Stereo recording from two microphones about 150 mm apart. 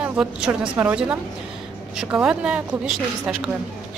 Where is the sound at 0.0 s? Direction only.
10° right (ahead or behind).